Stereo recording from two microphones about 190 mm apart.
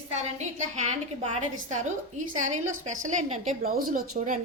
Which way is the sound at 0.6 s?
40° right (ahead or behind).